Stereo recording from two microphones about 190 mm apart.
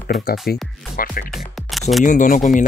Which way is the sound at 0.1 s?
50° left (ahead or behind).